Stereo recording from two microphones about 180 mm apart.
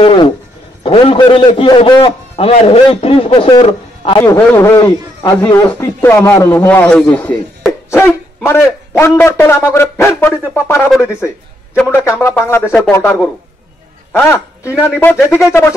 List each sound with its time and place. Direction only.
0.8 s a man's voice: 30° left (ahead or behind)
4.4 s a man's voice: 10° left (ahead or behind)